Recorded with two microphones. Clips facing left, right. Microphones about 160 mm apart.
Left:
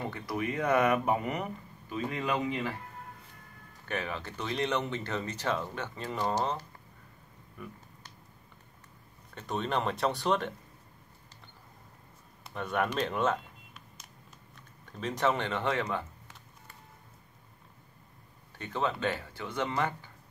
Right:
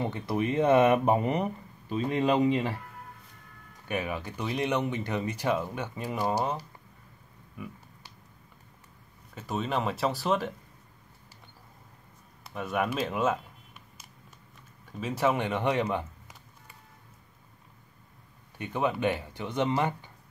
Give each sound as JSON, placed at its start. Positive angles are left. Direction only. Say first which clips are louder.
{"t": 0.0, "sound": "speech", "louder": "right 5 dB", "side_deg": -25}
{"t": 3.8, "sound": "speech", "louder": "right 3 dB", "side_deg": -15}
{"t": 7.5, "sound": "a sound", "louder": "right 3 dB", "side_deg": -5}
{"t": 9.3, "sound": "speech", "louder": "right 1 dB", "side_deg": -5}
{"t": 12.4, "sound": "speech", "louder": "right 1 dB", "side_deg": -5}
{"t": 14.9, "sound": "speech", "louder": "right 2 dB", "side_deg": -5}
{"t": 18.6, "sound": "speech", "louder": "right 3 dB", "side_deg": -15}